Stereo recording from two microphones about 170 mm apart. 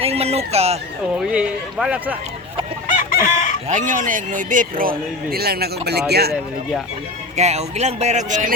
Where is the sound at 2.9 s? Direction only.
50° left (ahead or behind).